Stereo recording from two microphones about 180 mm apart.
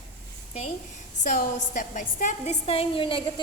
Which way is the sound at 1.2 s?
45° left (ahead or behind).